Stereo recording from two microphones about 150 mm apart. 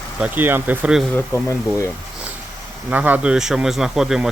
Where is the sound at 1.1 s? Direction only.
20° left (ahead or behind).